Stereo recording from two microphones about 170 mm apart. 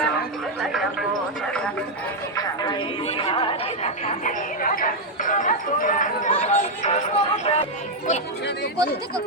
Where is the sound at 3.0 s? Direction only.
35° left (ahead or behind).